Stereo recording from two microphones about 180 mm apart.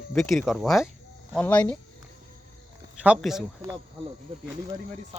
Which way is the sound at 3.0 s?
5° right (ahead or behind).